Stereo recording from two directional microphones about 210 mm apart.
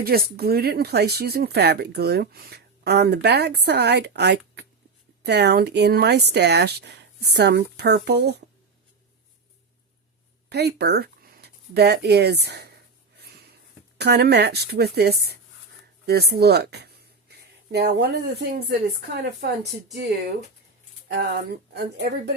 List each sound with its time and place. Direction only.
0.0 s speech: 45° right (ahead or behind)
10.5 s speech: 50° right (ahead or behind)
13.1 s a sound: 50° right (ahead or behind)
14.0 s speech: 50° right (ahead or behind)
21.1 s speech: 50° right (ahead or behind)